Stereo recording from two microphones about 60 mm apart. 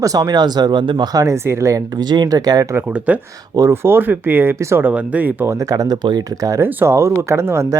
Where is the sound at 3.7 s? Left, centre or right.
Right.